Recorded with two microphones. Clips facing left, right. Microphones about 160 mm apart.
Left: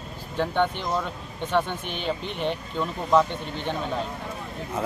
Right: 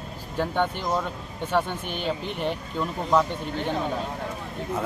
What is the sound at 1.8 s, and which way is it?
Speech, 45° right (ahead or behind).